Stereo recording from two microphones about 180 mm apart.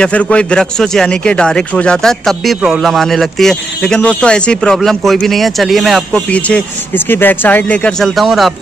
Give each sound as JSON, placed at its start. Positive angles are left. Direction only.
{"t": 0.0, "sound": "a man's voice", "side_deg": 5}